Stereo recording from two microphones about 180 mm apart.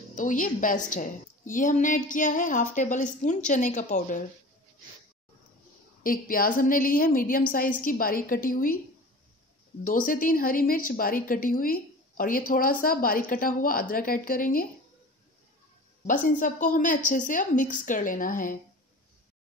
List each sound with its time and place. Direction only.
0.1 s a woman's voice: 45° left (ahead or behind)
6.0 s a woman's voice: 50° left (ahead or behind)
9.8 s a woman's voice: 50° left (ahead or behind)
16.1 s a woman's voice: 50° left (ahead or behind)